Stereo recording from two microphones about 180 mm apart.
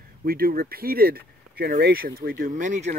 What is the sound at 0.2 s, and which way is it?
Speech, 55° right (ahead or behind).